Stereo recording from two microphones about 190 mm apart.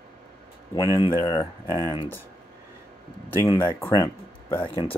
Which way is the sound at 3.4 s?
20° left (ahead or behind).